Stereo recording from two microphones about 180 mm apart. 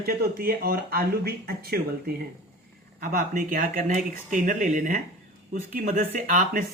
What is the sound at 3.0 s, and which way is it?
Speech, 50° right (ahead or behind).